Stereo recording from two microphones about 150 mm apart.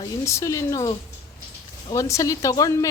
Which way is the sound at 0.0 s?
20° left (ahead or behind).